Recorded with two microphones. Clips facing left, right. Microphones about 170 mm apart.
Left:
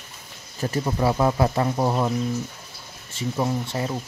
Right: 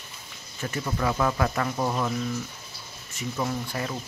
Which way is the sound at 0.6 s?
30° left (ahead or behind).